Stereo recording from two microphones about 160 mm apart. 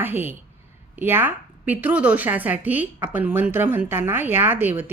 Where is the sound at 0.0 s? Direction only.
15° right (ahead or behind).